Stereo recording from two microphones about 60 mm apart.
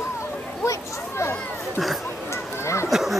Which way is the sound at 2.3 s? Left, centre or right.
Left.